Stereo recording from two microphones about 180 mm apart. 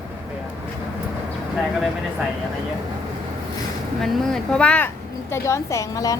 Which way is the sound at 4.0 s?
Centre (ahead or behind).